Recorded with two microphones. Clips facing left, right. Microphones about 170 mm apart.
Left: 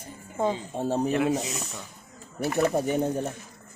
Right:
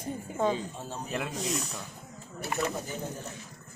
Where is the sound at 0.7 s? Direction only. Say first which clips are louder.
Left 13 dB; 65° left (ahead or behind).